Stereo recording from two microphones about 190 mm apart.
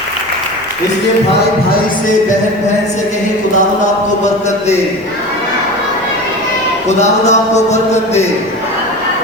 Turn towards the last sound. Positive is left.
turn(degrees=40)  # may be behind; listen again after turning